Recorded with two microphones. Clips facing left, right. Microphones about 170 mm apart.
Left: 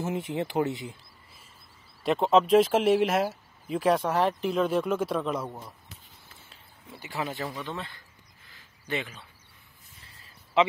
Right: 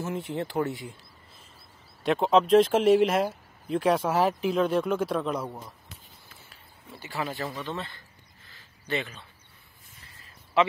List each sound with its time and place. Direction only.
0.0 s speech: 20° left (ahead or behind)
2.0 s speech: centre (ahead or behind)
6.9 s speech: 20° left (ahead or behind)
8.5 s a sound: 15° left (ahead or behind)